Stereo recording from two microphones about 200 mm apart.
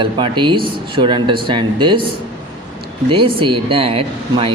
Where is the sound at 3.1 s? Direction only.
25° right (ahead or behind).